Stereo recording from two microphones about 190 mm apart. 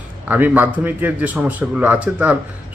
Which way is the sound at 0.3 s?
10° right (ahead or behind).